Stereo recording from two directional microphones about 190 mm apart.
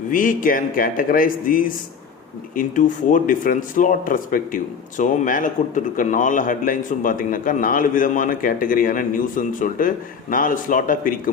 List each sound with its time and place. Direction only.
0.1 s speech: 45° left (ahead or behind)